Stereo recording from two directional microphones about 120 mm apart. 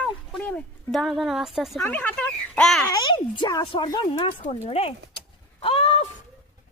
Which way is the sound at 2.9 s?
40° left (ahead or behind).